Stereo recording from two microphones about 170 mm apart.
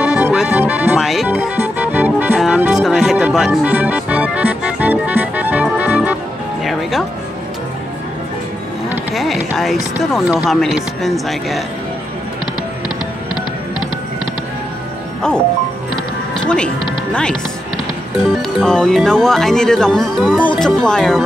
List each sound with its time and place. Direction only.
0.0 s music: 5° right (ahead or behind)
8.8 s a sound: 5° right (ahead or behind)
10.1 s speech: centre (ahead or behind)
12.8 s music: 25° left (ahead or behind)
16.4 s speech: 5° left (ahead or behind)
18.4 s speech: 5° left (ahead or behind)